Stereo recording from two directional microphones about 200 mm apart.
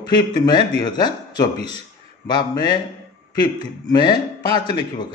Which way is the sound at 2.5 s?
20° left (ahead or behind).